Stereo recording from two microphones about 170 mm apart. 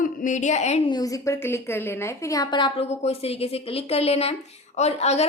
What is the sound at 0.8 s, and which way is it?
A woman's voice, 25° left (ahead or behind).